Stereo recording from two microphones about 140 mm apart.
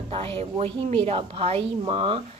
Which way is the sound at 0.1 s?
45° right (ahead or behind).